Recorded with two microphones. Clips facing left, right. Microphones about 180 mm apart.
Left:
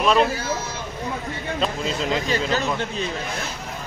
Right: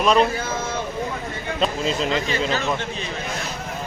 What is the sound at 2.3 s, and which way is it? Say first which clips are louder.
Speech: left 1 dB; 40° left (ahead or behind).